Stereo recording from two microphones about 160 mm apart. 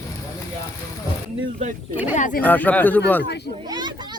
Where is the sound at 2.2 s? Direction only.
55° left (ahead or behind).